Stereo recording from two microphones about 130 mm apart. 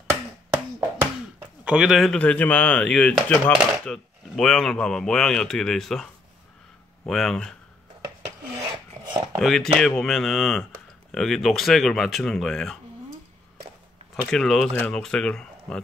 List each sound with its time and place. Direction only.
0.0 s a sound: 20° right (ahead or behind)
1.6 s speech: 5° right (ahead or behind)
7.1 s speech: 5° left (ahead or behind)
8.7 s filing: 35° right (ahead or behind)
9.4 s speech: 5° left (ahead or behind)
14.3 s speech: 5° left (ahead or behind)